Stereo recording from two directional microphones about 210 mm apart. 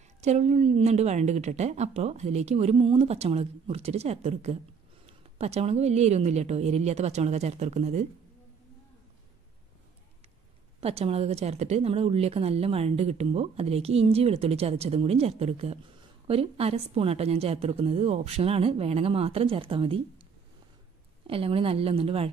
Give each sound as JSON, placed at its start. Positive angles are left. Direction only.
{"t": 0.2, "sound": "a woman's voice", "side_deg": -30}
{"t": 10.8, "sound": "speech", "side_deg": -30}
{"t": 21.3, "sound": "speech", "side_deg": -25}